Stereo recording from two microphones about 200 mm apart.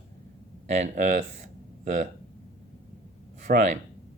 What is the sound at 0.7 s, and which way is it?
Speech, 35° right (ahead or behind).